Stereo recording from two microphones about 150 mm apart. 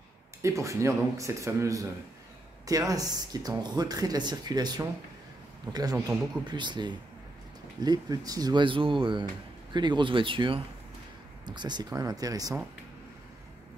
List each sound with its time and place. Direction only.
0.4 s speech: 20° right (ahead or behind)